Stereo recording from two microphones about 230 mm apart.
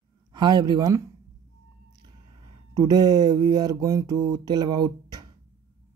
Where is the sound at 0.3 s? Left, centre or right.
Centre.